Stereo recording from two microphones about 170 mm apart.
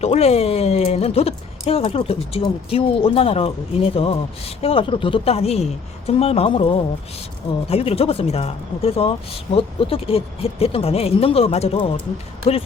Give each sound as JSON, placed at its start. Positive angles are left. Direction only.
{"t": 0.0, "sound": "speech", "side_deg": 40}